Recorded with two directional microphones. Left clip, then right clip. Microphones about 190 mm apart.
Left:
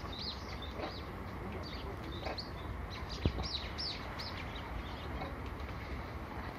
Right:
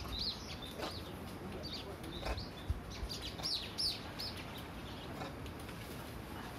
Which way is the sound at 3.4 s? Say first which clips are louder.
Right 2 dB; 60° right (ahead or behind).